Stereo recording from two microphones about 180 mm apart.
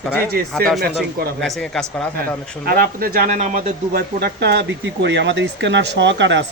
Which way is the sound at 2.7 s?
55° right (ahead or behind).